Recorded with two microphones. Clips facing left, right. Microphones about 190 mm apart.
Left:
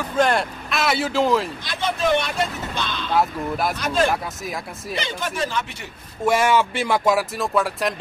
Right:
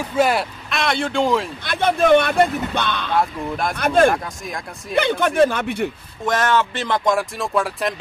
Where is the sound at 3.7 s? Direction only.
55° right (ahead or behind).